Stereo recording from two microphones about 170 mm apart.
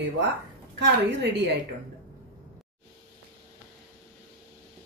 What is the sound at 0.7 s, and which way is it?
Speech, 90° right.